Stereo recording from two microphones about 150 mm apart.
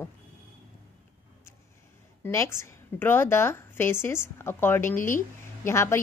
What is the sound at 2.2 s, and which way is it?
A woman's voice, 15° left (ahead or behind).